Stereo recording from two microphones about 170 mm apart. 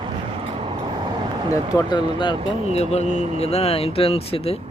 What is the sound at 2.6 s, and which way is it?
Speech, 40° left (ahead or behind).